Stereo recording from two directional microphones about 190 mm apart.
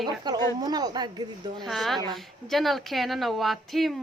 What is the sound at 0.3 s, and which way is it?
A woman's voice, 20° right (ahead or behind).